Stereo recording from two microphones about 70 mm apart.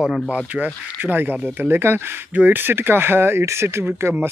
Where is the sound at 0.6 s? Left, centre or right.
Right.